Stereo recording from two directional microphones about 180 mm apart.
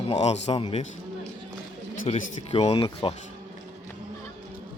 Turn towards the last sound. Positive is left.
turn(degrees=35)  # may be behind; listen again after turning